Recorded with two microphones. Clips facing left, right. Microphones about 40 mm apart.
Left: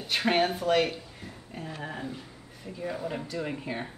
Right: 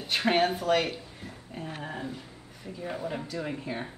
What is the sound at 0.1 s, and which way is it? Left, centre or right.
Speech, centre.